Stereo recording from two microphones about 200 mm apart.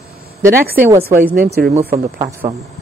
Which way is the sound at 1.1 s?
10° right (ahead or behind).